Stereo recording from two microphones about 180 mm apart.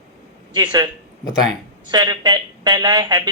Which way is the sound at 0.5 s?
25° right (ahead or behind).